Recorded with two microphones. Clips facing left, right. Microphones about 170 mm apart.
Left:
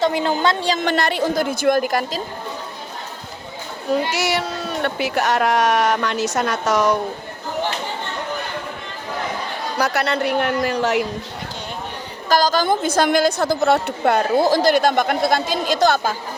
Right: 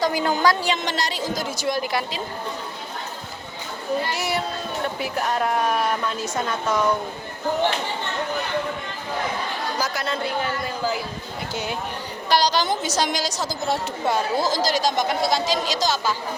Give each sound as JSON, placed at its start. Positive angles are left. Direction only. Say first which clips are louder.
{"t": 0.0, "sound": "a woman's voice", "louder": "left 2 dB", "side_deg": 25}
{"t": 0.8, "sound": "a woman's voice", "louder": "left 7 dB", "side_deg": 55}
{"t": 4.1, "sound": "speech", "louder": "left 4 dB", "side_deg": 85}
{"t": 9.7, "sound": "speech", "louder": "left 9 dB", "side_deg": 70}
{"t": 12.3, "sound": "a woman's voice", "louder": "left 4 dB", "side_deg": 45}